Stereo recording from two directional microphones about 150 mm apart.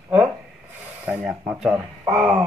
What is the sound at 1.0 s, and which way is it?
Speech, 10° right (ahead or behind).